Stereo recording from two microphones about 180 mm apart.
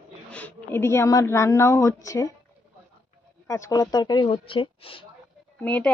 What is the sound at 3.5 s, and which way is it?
A woman's voice, 20° left (ahead or behind).